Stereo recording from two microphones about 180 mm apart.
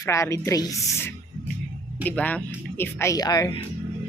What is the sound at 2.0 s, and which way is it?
A man's voice, 10° left (ahead or behind).